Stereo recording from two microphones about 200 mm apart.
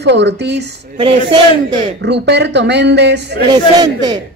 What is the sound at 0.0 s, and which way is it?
Speech, 60° right (ahead or behind).